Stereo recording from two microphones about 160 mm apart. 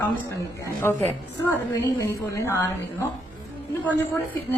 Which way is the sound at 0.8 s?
15° left (ahead or behind).